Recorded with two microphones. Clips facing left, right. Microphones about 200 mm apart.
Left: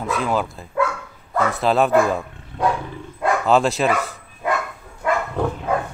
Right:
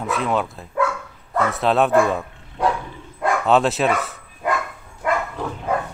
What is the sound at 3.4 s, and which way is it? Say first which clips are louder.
Speech: even; centre (ahead or behind).